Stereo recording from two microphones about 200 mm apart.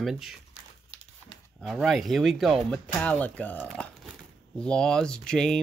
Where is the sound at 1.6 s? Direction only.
Centre (ahead or behind).